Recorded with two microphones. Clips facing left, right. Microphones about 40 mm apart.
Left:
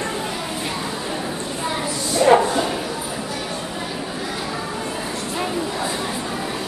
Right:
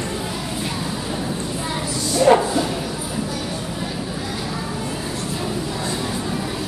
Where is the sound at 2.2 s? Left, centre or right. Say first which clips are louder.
Even; centre.